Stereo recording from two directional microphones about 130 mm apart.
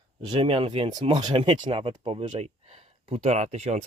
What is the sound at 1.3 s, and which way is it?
Speech, 50° right (ahead or behind).